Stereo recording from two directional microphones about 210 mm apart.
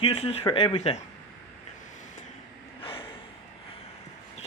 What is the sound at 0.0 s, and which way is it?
Speech, 30° left (ahead or behind).